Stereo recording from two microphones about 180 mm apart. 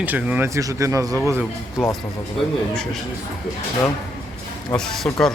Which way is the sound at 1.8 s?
5° right (ahead or behind).